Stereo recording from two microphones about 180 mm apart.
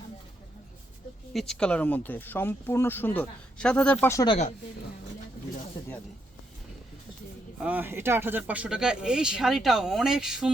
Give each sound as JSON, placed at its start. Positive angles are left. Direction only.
{"t": 1.3, "sound": "speech", "side_deg": 0}
{"t": 4.0, "sound": "speech", "side_deg": 20}
{"t": 7.6, "sound": "speech", "side_deg": -10}